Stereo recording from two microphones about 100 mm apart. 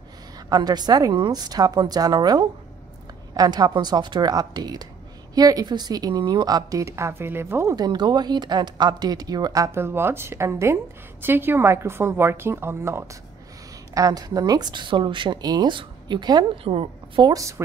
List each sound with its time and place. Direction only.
0.5 s a woman's voice: 45° right (ahead or behind); by 7.7 s 25° right (ahead or behind)
7.7 s a woman's voice: 45° right (ahead or behind)
16.6 s a woman's voice: 70° right (ahead or behind)
17.3 s a woman's voice: 30° right (ahead or behind)